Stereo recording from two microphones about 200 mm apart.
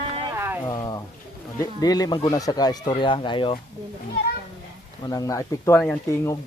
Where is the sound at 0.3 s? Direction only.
10° right (ahead or behind).